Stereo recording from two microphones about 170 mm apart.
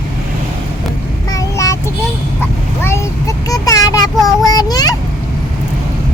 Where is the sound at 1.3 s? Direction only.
20° left (ahead or behind).